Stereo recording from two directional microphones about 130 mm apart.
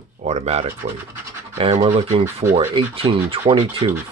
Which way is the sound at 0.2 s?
55° right (ahead or behind).